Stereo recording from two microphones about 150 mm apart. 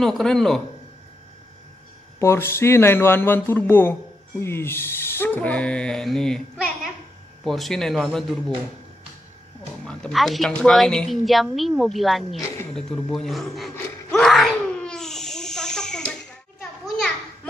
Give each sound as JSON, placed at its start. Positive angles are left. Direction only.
{"t": 0.0, "sound": "a woman's voice", "side_deg": 5}
{"t": 2.1, "sound": "a woman's voice", "side_deg": 15}
{"t": 9.8, "sound": "a woman's voice", "side_deg": 5}
{"t": 14.1, "sound": "a sound", "side_deg": 0}